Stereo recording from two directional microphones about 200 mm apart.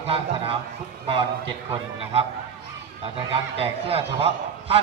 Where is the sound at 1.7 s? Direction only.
30° right (ahead or behind).